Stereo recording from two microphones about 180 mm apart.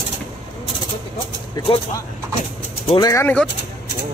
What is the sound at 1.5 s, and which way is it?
Speech, 20° left (ahead or behind).